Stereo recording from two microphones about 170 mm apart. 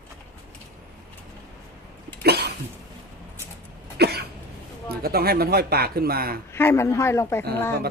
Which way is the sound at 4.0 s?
70° right (ahead or behind).